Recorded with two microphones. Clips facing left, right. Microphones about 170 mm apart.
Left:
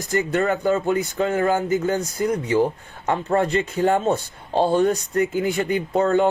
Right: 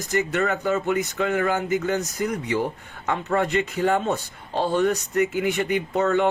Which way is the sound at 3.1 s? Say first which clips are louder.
Left 3 dB; 40° left (ahead or behind).